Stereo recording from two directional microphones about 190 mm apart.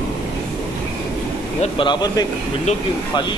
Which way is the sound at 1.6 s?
25° left (ahead or behind).